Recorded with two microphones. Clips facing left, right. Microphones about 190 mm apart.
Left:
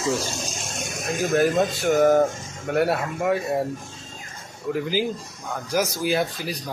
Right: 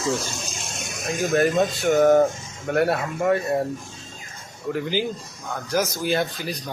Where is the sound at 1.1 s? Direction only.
Centre (ahead or behind).